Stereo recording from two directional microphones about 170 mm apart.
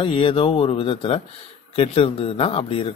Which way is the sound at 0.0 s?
30° left (ahead or behind).